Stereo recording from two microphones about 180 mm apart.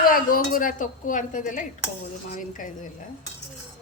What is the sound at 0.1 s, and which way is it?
A woman's voice, 50° left (ahead or behind).